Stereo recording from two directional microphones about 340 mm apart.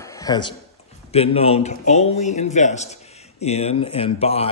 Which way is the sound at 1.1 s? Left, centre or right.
Centre.